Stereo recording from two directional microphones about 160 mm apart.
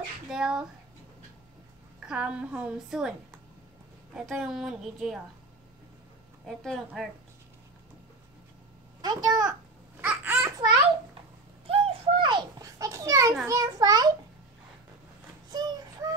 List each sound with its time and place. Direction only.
0.3 s a woman's voice: 5° right (ahead or behind)
2.0 s a woman's voice: 5° right (ahead or behind)
6.4 s a woman's voice: centre (ahead or behind)
9.0 s a child's voice: 25° right (ahead or behind)
10.0 s babbling: 10° right (ahead or behind)
11.6 s a sound: 35° right (ahead or behind); by 13.4 s 20° right (ahead or behind)
13.5 s a child's voice: 20° right (ahead or behind)
15.5 s child singing: 25° right (ahead or behind)